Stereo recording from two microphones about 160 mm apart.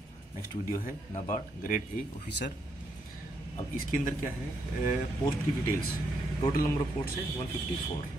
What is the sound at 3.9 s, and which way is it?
Speech, 60° left (ahead or behind).